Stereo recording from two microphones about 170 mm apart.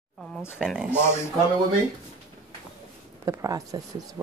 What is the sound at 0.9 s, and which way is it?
Speech, 15° left (ahead or behind).